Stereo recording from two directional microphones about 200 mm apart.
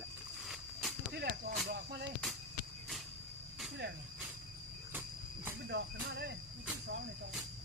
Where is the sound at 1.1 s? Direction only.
50° right (ahead or behind).